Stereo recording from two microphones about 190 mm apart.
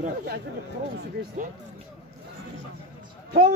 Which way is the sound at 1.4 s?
45° right (ahead or behind).